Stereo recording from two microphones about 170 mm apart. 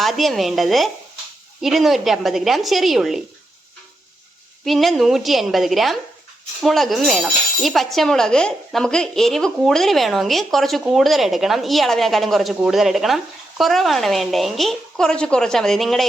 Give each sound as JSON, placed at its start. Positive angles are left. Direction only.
{"t": 0.0, "sound": "speech", "side_deg": 0}
{"t": 4.6, "sound": "speech", "side_deg": 0}